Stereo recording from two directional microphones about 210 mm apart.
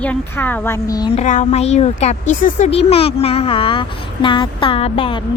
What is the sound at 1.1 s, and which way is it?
Speech, 35° left (ahead or behind).